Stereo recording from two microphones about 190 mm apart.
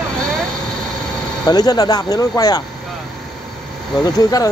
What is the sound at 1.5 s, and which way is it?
Speech, 20° left (ahead or behind).